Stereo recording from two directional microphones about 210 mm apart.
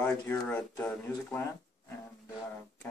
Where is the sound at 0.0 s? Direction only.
10° left (ahead or behind).